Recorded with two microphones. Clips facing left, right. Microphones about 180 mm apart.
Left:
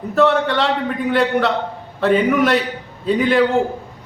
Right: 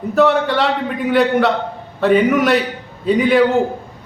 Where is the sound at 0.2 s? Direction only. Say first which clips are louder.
Right 1 dB; centre (ahead or behind).